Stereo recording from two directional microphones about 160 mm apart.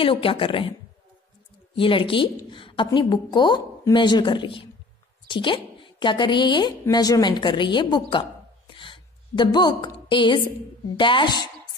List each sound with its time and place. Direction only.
0.0 s a woman's voice: 35° left (ahead or behind)
1.8 s a woman's voice: 35° left (ahead or behind)